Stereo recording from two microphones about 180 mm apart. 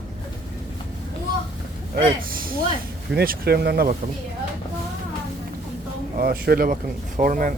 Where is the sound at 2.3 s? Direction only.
55° right (ahead or behind).